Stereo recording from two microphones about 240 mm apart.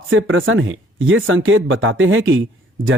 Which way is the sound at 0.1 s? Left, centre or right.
Right.